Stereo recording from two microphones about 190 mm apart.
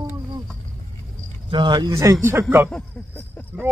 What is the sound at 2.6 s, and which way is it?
Speech, 5° left (ahead or behind).